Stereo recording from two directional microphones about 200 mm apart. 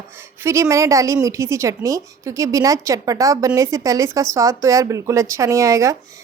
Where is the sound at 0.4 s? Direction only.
15° right (ahead or behind).